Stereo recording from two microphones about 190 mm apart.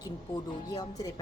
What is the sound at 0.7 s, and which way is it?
Speech, 20° left (ahead or behind).